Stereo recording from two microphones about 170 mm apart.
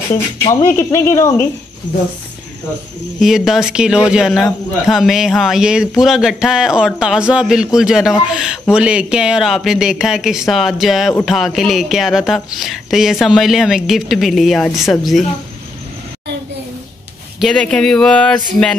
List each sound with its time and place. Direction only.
0.4 s speech: 30° left (ahead or behind)
0.7 s speech: 15° left (ahead or behind)
3.2 s speech: centre (ahead or behind)
17.4 s speech: 5° left (ahead or behind)